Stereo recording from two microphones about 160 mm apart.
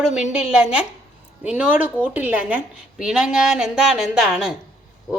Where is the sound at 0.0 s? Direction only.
5° right (ahead or behind).